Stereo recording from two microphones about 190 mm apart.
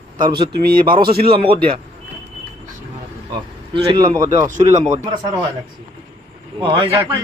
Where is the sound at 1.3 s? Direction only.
30° right (ahead or behind).